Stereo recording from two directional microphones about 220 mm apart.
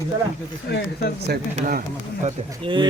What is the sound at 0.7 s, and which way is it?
Speech, 50° left (ahead or behind).